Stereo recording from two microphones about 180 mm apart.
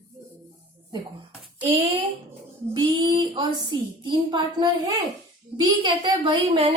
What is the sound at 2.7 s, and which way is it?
A woman's voice, 25° right (ahead or behind).